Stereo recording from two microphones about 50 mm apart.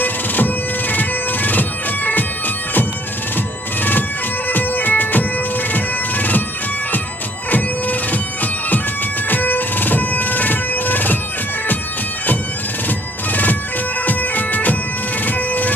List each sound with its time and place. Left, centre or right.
0.0 s bagpipes: left
3.3 s music: left
4.5 s bagpipes: left
7.5 s bagpipes: left
9.3 s music: left
13.3 s bagpipes: left